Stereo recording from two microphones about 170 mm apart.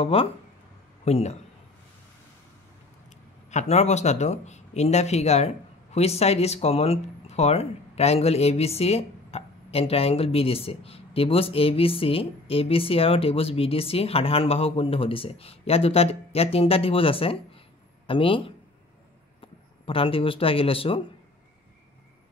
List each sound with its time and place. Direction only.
0.0 s speech: 35° left (ahead or behind)
3.4 s speech: 40° left (ahead or behind)